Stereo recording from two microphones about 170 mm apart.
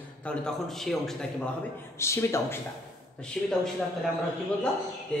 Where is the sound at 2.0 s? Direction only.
15° left (ahead or behind).